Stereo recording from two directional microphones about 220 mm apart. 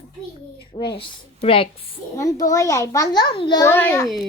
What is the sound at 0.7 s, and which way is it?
A woman's voice, 20° left (ahead or behind).